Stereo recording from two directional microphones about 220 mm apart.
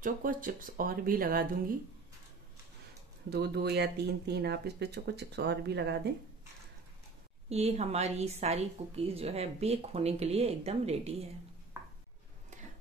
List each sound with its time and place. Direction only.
0.0 s speech: 40° right (ahead or behind)
3.3 s speech: 45° right (ahead or behind)
7.4 s a woman's voice: 30° right (ahead or behind)